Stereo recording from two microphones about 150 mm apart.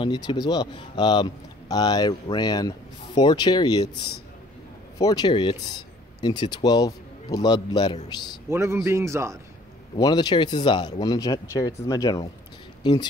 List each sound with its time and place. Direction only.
0.0 s speech: 30° left (ahead or behind)
4.9 s speech: 25° left (ahead or behind)
8.5 s a man's voice: 20° right (ahead or behind)
9.9 s speech: 25° left (ahead or behind)